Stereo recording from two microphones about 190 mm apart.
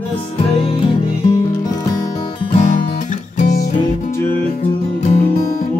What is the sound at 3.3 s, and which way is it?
Music, 40° left (ahead or behind).